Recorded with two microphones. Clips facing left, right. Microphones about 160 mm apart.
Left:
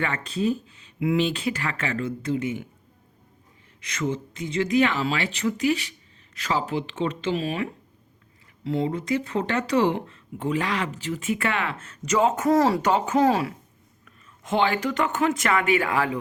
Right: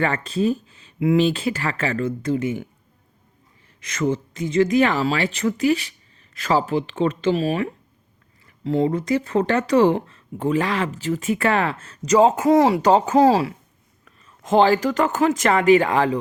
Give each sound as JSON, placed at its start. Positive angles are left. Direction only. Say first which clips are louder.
{"t": 0.3, "sound": "speech", "louder": "right 4 dB", "side_deg": -45}
{"t": 3.8, "sound": "speech", "louder": "right 5 dB", "side_deg": -50}
{"t": 12.8, "sound": "speech", "louder": "right 5 dB", "side_deg": -35}